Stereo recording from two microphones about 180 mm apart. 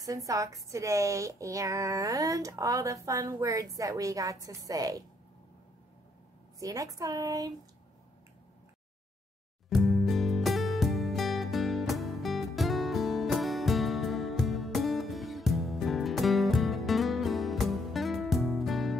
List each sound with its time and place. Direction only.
0.0 s a woman's voice: 20° right (ahead or behind)
6.6 s a woman's voice: 20° right (ahead or behind)
9.7 s music: centre (ahead or behind)